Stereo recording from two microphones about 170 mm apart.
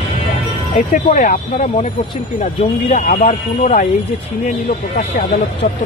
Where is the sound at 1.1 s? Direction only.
50° left (ahead or behind).